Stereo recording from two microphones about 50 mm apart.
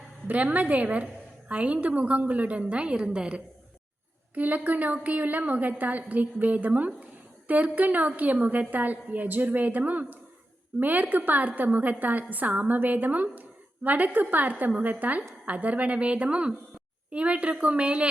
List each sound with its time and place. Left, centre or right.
0.3 s a woman's voice: right
4.4 s a woman's voice: right